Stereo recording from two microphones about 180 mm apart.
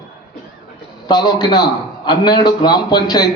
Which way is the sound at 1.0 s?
25° left (ahead or behind).